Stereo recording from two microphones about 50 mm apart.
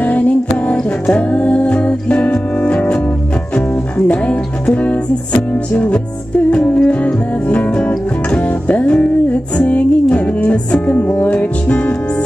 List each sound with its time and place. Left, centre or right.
0.0 s music: left
4.1 s music: left